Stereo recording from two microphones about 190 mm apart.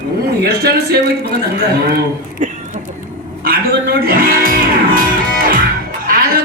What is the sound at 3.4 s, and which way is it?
Music, 50° right (ahead or behind).